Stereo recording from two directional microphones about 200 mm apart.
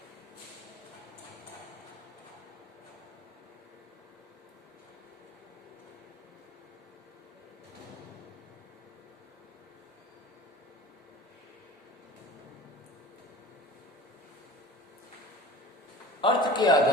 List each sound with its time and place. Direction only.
16.2 s a man's voice: 20° left (ahead or behind)